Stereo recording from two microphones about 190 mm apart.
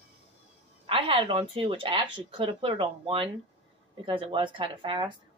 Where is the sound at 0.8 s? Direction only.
25° right (ahead or behind).